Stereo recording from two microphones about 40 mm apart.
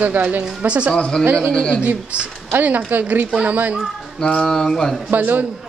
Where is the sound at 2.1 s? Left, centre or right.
Right.